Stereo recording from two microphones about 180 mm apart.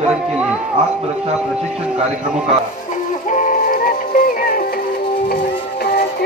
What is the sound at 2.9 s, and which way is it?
Music, 45° left (ahead or behind).